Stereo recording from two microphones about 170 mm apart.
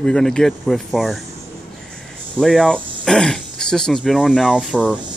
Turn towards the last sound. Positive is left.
turn(degrees=-5)  # may be behind; listen again after turning